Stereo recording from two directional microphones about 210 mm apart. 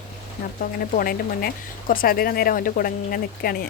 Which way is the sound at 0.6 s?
45° left (ahead or behind).